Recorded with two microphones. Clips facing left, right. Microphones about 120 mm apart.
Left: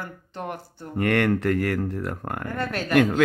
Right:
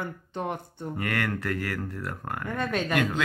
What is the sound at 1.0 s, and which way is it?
Speech, 30° left (ahead or behind).